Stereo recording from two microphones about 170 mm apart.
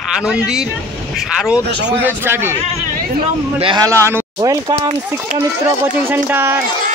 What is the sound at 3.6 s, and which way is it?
Speech, 30° right (ahead or behind).